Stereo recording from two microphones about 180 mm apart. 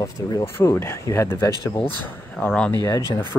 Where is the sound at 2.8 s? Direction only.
20° left (ahead or behind).